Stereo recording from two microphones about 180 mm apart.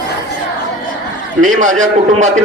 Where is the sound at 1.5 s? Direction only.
45° right (ahead or behind).